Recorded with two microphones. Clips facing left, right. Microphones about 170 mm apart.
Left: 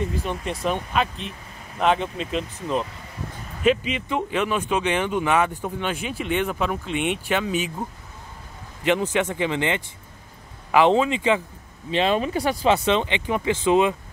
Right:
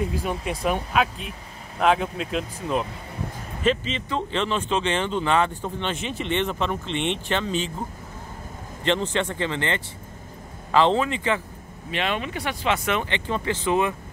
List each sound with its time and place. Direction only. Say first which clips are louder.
0.0 s speech: even; 10° right (ahead or behind)
3.6 s speech: left 3 dB; 10° left (ahead or behind)
8.8 s speech: left 2 dB; 10° left (ahead or behind)
11.9 s speech: left 6 dB; 30° left (ahead or behind)